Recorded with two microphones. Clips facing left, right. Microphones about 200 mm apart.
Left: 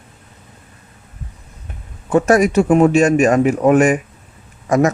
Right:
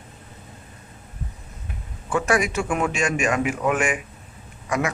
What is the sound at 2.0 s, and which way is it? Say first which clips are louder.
A man's voice: left 9 dB; 40° left (ahead or behind).